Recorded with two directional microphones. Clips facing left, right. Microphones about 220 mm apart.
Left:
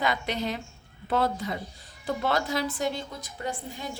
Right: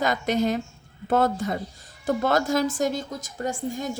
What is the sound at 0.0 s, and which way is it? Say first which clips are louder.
A woman's voice: right 6 dB; 45° right (ahead or behind).